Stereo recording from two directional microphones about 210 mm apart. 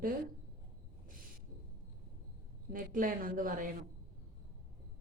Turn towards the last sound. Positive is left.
turn(degrees=-40)  # may be behind; listen again after turning